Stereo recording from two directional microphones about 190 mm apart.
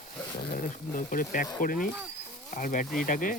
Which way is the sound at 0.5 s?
45° left (ahead or behind).